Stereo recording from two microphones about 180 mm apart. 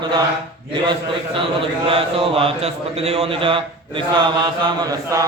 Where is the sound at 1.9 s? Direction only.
30° right (ahead or behind).